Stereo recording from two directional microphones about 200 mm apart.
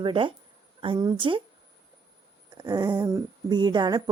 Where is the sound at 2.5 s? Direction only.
20° right (ahead or behind).